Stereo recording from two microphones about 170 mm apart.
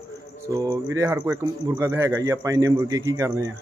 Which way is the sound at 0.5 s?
20° right (ahead or behind).